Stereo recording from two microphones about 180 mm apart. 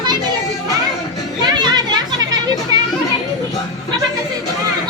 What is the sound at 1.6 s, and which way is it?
Children playing, 25° right (ahead or behind).